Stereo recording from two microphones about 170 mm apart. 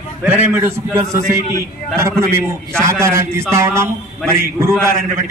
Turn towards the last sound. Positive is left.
turn(degrees=-15)  # may be behind; listen again after turning